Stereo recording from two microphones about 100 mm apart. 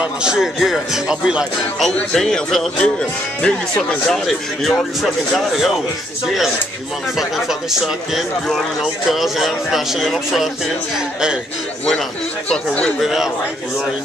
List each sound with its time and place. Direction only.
0.0 s speech: 5° right (ahead or behind)
1.9 s a man's voice: 5° left (ahead or behind)
6.2 s speech: 5° right (ahead or behind)
12.4 s a man's voice: 10° left (ahead or behind)
13.0 s speech: centre (ahead or behind)